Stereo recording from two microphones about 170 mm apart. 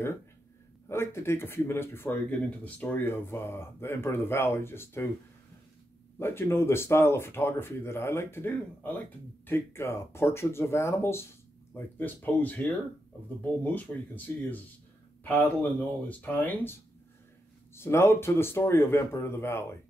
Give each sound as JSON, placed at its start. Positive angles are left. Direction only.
{"t": 0.8, "sound": "speech", "side_deg": 15}
{"t": 6.1, "sound": "speech", "side_deg": 15}
{"t": 17.7, "sound": "speech", "side_deg": 15}